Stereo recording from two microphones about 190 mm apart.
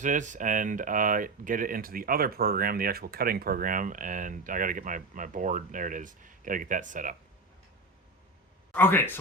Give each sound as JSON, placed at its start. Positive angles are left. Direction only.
{"t": 0.0, "sound": "speech", "side_deg": -40}
{"t": 8.7, "sound": "speech", "side_deg": 10}